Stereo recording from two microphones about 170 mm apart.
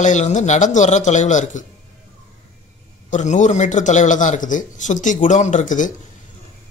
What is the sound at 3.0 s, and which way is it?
A man's voice, 45° left (ahead or behind).